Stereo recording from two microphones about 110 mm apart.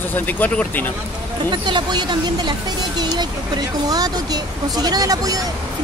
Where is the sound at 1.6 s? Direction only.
45° right (ahead or behind).